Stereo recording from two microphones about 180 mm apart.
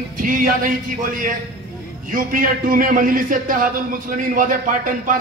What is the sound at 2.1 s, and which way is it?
A man's voice, 50° right (ahead or behind).